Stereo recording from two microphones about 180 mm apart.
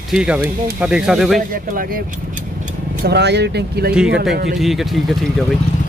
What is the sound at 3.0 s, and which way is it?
Speech, 65° right (ahead or behind).